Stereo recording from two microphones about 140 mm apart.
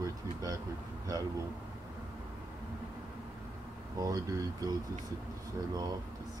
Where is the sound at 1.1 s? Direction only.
25° right (ahead or behind).